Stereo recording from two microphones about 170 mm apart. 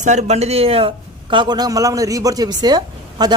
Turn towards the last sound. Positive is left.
turn(degrees=-25)  # may be behind; listen again after turning